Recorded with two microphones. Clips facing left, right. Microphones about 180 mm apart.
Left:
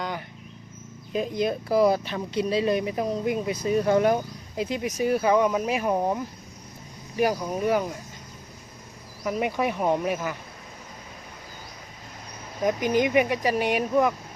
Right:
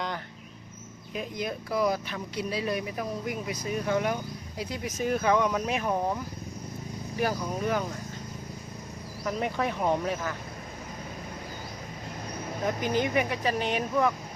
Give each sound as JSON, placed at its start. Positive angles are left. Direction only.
{"t": 1.1, "sound": "speech", "side_deg": 30}
{"t": 3.9, "sound": "speech", "side_deg": 40}
{"t": 4.5, "sound": "speech", "side_deg": 20}
{"t": 7.2, "sound": "speech", "side_deg": 15}
{"t": 9.2, "sound": "speech", "side_deg": 10}
{"t": 12.8, "sound": "speech", "side_deg": 15}